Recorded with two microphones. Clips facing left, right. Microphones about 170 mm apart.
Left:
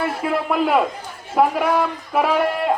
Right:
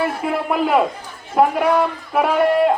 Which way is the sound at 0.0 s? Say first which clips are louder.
Right 1 dB; centre (ahead or behind).